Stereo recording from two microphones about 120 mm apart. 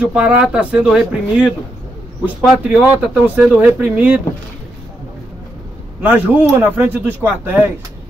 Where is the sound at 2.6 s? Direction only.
10° right (ahead or behind).